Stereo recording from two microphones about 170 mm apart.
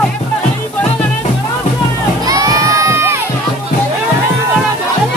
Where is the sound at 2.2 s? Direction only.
20° right (ahead or behind).